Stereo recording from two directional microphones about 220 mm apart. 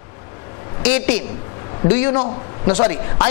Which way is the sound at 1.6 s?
25° left (ahead or behind).